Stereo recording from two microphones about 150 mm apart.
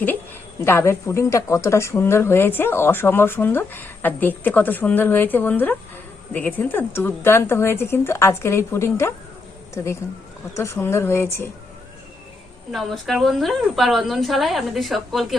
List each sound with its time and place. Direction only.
0.6 s a woman's voice: 15° left (ahead or behind)
12.7 s a woman's voice: centre (ahead or behind)